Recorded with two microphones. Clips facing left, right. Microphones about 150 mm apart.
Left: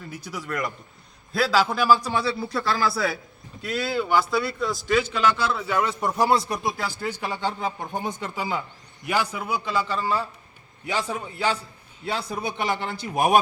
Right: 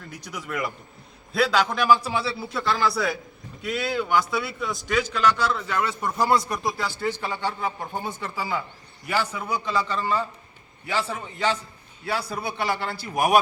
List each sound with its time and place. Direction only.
0.0 s speech: 5° left (ahead or behind)
6.3 s a man's voice: 25° left (ahead or behind)
7.0 s speech: 15° left (ahead or behind)
12.0 s a man's voice: 20° left (ahead or behind)